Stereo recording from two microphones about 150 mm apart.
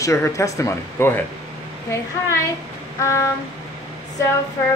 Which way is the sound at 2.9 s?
20° left (ahead or behind).